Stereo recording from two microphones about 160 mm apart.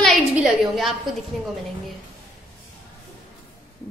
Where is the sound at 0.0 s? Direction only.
Centre (ahead or behind).